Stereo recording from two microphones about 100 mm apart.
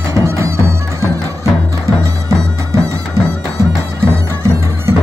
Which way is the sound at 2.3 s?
30° right (ahead or behind).